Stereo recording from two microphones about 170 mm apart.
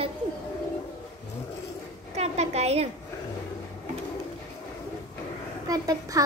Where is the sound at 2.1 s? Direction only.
40° right (ahead or behind).